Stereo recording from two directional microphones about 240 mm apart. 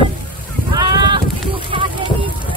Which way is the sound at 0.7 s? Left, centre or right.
Centre.